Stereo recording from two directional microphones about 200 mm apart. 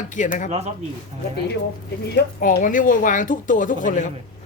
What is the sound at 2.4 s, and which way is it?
A woman's voice, 40° left (ahead or behind).